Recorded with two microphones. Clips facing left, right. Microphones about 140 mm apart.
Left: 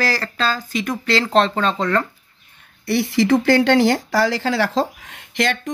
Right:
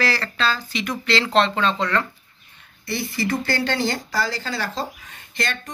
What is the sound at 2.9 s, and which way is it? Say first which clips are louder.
Speech: left 8 dB; 85° left.